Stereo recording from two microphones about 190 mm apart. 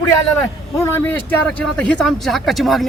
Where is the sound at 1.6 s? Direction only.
5° left (ahead or behind).